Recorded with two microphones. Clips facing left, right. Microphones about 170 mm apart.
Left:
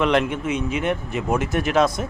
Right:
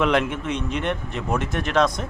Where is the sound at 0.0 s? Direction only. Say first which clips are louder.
Left 1 dB; centre (ahead or behind).